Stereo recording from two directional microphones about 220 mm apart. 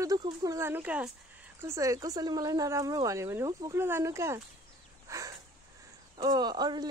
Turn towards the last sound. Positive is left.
turn(degrees=-20)  # may be behind; listen again after turning